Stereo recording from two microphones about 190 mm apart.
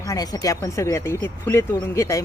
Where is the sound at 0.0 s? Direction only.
20° left (ahead or behind).